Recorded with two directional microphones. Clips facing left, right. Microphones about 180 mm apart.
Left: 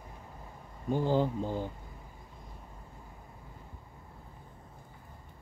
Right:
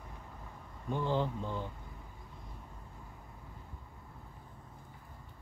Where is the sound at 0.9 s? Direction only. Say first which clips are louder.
Left 5 dB; 40° left (ahead or behind).